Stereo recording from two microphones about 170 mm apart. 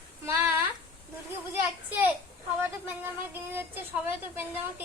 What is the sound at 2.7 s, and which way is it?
A woman's voice, 10° right (ahead or behind).